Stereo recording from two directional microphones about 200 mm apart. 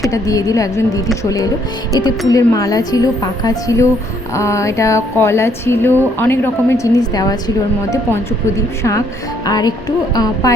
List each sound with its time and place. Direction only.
0.1 s speech: 15° left (ahead or behind)
9.5 s music: 20° left (ahead or behind)
10.4 s speech: 15° left (ahead or behind)